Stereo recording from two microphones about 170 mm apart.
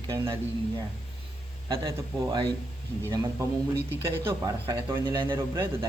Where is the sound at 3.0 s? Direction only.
15° right (ahead or behind).